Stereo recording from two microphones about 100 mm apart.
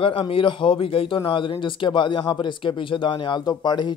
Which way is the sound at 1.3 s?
55° left (ahead or behind).